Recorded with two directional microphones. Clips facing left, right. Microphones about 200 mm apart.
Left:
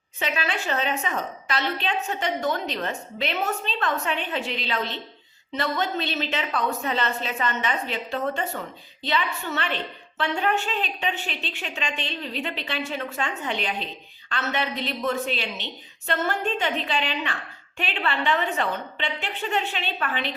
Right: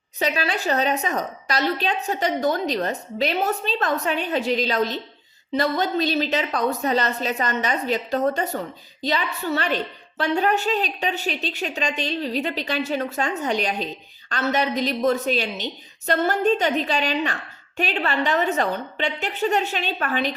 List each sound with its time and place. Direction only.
0.2 s a woman's voice: 35° right (ahead or behind)